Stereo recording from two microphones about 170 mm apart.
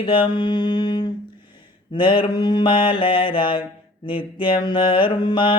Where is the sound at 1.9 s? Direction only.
30° left (ahead or behind).